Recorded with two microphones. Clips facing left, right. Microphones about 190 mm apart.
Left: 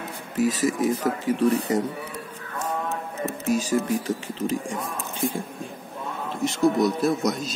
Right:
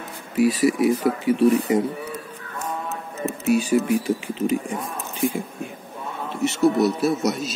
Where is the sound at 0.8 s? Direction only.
10° right (ahead or behind).